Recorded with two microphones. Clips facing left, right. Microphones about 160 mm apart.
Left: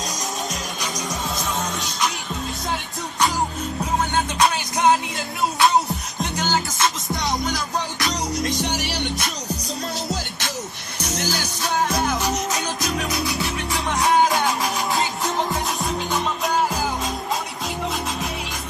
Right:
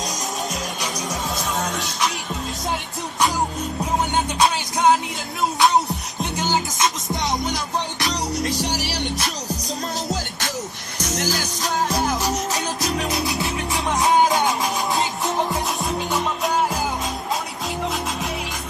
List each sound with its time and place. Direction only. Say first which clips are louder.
4.4 s music: even; centre (ahead or behind)
6.3 s music: right 1 dB; 10° right (ahead or behind)
8.3 s music: even; 30° right (ahead or behind)
11.2 s music: right 1 dB; 40° right (ahead or behind)
11.9 s music: even; 10° right (ahead or behind)
12.5 s music: right 1 dB; 35° right (ahead or behind)
13.2 s music: right 1 dB; 20° right (ahead or behind)
15.8 s music: right 1 dB; centre (ahead or behind)